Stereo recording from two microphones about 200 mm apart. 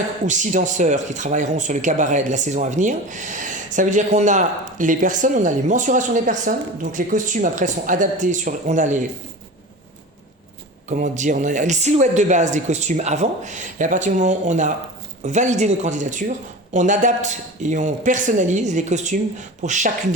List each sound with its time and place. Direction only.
0.3 s speech: 40° right (ahead or behind)
10.8 s speech: 40° right (ahead or behind)